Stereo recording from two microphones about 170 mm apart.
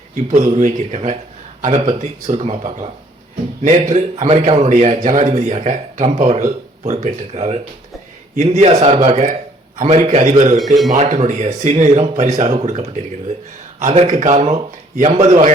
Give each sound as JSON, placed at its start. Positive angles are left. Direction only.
{"t": 0.5, "sound": "a man's voice", "side_deg": -45}